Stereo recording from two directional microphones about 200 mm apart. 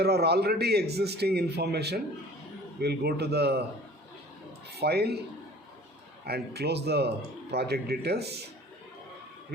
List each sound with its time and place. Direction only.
0.0 s a man's voice: 55° right (ahead or behind)
4.7 s a man's voice: 55° right (ahead or behind)
6.2 s speech: 55° right (ahead or behind)